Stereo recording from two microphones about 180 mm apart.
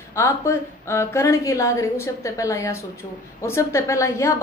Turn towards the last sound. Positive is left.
turn(degrees=15)  # may be behind; listen again after turning